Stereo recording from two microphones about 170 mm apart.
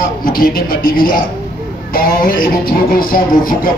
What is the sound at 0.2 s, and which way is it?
A man's voice, 60° left (ahead or behind).